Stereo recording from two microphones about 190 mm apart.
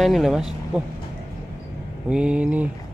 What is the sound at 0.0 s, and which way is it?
Speech, centre (ahead or behind).